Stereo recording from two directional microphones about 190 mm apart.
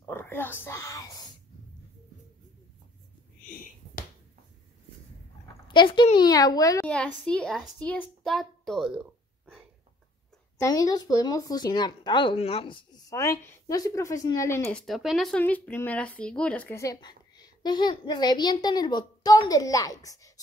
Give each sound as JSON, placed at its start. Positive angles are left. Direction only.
{"t": 0.0, "sound": "speech", "side_deg": 10}
{"t": 3.4, "sound": "a sound", "side_deg": 45}
{"t": 5.7, "sound": "speech", "side_deg": 25}
{"t": 6.9, "sound": "a child's voice", "side_deg": 5}
{"t": 10.6, "sound": "speech", "side_deg": 20}
{"t": 13.1, "sound": "speech", "side_deg": 15}
{"t": 14.8, "sound": "speech", "side_deg": 0}